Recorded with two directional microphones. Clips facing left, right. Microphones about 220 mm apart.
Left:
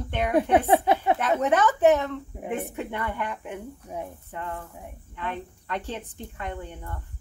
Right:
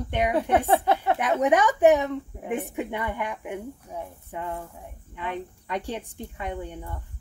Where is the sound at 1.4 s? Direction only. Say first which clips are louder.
Right 2 dB; 15° right (ahead or behind).